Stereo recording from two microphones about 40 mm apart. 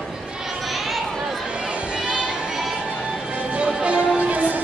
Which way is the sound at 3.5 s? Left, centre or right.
Right.